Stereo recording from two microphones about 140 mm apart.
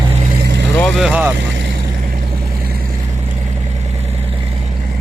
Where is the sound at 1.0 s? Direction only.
10° right (ahead or behind).